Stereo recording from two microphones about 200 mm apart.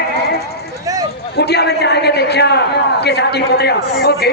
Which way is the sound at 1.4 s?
55° left (ahead or behind).